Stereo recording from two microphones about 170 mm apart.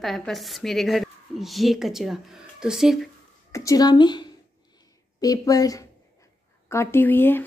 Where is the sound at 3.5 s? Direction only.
20° left (ahead or behind).